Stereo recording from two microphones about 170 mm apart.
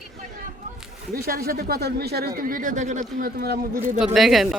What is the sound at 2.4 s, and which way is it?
Speech, 55° right (ahead or behind).